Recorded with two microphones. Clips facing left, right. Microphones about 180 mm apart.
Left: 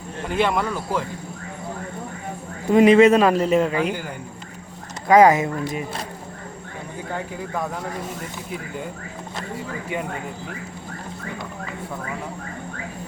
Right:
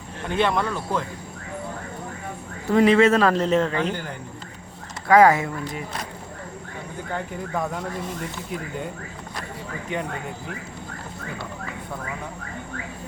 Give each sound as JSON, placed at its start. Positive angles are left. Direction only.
{"t": 0.3, "sound": "a man's voice", "side_deg": 10}
{"t": 2.6, "sound": "a man's voice", "side_deg": 20}
{"t": 7.5, "sound": "speech", "side_deg": 0}